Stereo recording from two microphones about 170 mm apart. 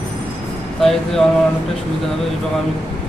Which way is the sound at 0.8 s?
Centre (ahead or behind).